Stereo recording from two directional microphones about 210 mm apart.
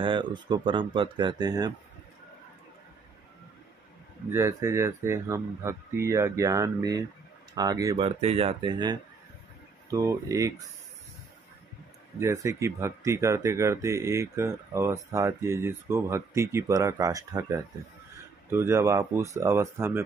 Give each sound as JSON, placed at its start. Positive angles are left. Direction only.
{"t": 0.0, "sound": "speech", "side_deg": -25}
{"t": 4.3, "sound": "speech", "side_deg": -15}
{"t": 8.0, "sound": "speech", "side_deg": -30}
{"t": 12.2, "sound": "speech", "side_deg": -15}